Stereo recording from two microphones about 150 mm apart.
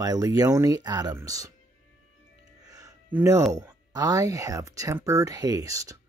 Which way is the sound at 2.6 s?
25° right (ahead or behind).